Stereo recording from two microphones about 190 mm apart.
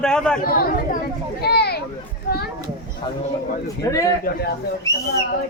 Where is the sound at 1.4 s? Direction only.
55° left (ahead or behind).